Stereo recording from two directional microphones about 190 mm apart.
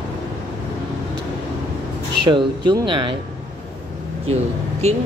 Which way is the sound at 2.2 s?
25° right (ahead or behind).